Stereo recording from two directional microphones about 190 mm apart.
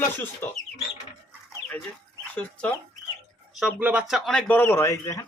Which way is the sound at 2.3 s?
5° left (ahead or behind).